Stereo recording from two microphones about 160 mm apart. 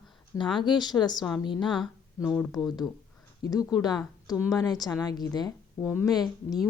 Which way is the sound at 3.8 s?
25° left (ahead or behind).